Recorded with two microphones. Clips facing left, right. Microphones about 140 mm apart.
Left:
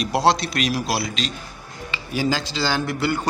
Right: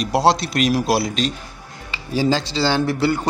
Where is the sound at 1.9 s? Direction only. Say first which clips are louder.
Right 4 dB; 30° right (ahead or behind).